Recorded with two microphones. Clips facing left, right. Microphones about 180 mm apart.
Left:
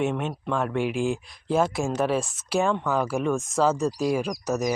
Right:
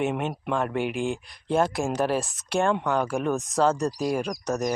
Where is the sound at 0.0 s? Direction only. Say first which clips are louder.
Even; 5° right (ahead or behind).